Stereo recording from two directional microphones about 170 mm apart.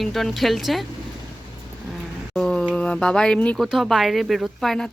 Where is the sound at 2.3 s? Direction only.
5° left (ahead or behind).